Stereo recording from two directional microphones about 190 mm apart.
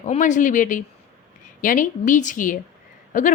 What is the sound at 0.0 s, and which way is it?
A woman's voice, 40° left (ahead or behind).